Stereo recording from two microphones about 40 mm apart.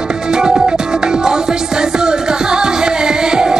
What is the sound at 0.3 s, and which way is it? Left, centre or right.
Music, centre.